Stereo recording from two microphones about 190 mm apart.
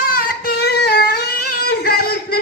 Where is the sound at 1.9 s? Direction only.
55° left (ahead or behind).